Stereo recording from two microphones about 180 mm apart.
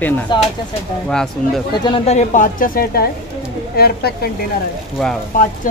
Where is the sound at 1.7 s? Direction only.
30° left (ahead or behind); by 4.2 s 60° left (ahead or behind).